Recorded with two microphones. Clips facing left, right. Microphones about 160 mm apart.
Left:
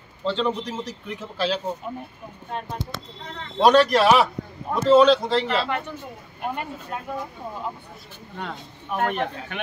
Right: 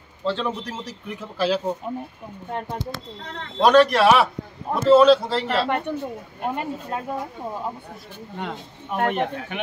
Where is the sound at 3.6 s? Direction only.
Centre (ahead or behind).